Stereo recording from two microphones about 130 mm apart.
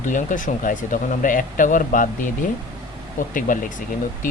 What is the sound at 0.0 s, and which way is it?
Speech, 75° left (ahead or behind).